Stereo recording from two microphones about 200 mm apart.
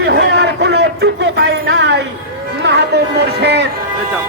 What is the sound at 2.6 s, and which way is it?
A man's voice, 55° right (ahead or behind).